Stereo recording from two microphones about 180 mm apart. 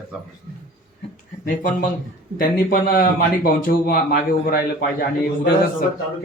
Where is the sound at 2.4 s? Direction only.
50° left (ahead or behind).